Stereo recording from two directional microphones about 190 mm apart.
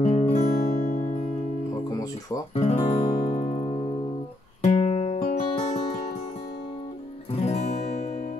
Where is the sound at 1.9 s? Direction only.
20° left (ahead or behind).